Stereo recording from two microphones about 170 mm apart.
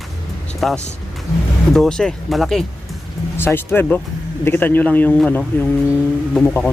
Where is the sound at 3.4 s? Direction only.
15° left (ahead or behind).